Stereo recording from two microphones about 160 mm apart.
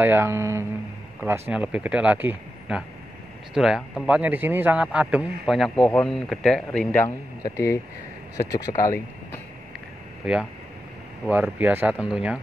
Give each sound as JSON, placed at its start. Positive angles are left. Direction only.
{"t": 0.0, "sound": "a man's voice", "side_deg": -15}
{"t": 7.4, "sound": "speech", "side_deg": 20}
{"t": 11.2, "sound": "speech", "side_deg": -10}